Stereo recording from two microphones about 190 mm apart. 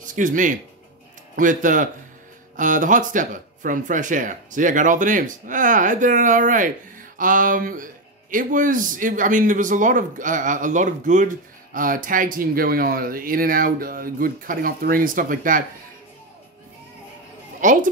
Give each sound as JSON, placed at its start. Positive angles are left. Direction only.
{"t": 0.0, "sound": "speech", "side_deg": -45}
{"t": 17.6, "sound": "speech", "side_deg": -45}